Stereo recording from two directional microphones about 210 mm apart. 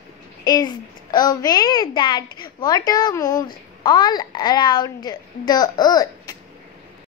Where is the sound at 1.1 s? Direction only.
20° left (ahead or behind).